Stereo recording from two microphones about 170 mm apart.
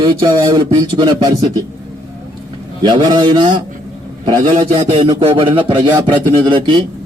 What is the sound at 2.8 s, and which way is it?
A man's voice, 25° right (ahead or behind).